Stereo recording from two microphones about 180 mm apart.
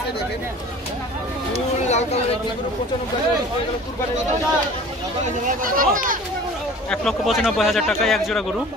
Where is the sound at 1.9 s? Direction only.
40° left (ahead or behind).